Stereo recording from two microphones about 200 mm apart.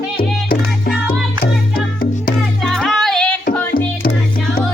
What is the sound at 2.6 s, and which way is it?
Music, centre (ahead or behind).